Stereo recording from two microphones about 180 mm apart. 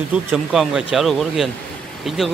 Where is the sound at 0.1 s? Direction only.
5° right (ahead or behind).